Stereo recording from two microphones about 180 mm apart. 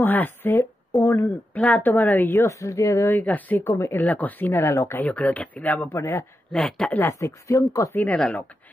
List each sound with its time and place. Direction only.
0.0 s a woman's voice: 10° left (ahead or behind)